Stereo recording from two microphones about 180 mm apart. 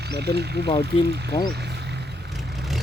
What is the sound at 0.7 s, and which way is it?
Speech, 25° left (ahead or behind).